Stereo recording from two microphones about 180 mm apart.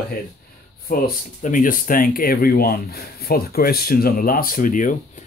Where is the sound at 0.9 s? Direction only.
50° left (ahead or behind).